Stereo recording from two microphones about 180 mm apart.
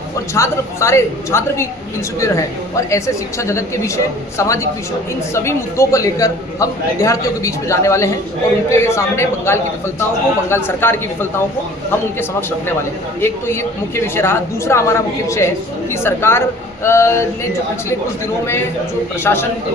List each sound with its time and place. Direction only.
0.3 s a man's voice: 15° left (ahead or behind)
2.9 s a man's voice: 15° left (ahead or behind)
13.2 s a man's voice: 15° left (ahead or behind)
19.2 s a man's voice: 15° left (ahead or behind)